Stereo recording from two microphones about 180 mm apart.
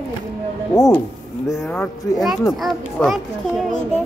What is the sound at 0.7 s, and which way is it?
Speech, 15° left (ahead or behind).